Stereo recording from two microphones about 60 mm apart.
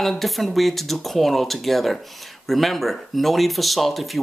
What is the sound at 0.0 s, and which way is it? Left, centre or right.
Speech, centre.